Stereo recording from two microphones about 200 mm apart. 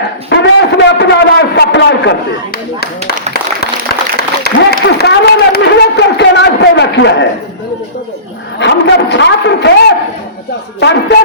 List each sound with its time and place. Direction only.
0.3 s a sound: 60° left (ahead or behind)
4.2 s applause: 50° left (ahead or behind)
8.5 s a man's voice: 60° left (ahead or behind)
10.8 s a man's voice: 60° left (ahead or behind)